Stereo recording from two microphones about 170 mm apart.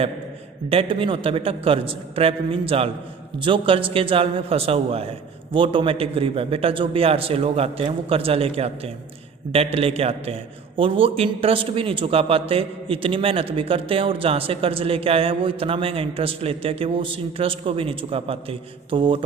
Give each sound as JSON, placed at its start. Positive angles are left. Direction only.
{"t": 0.7, "sound": "a man's voice", "side_deg": -35}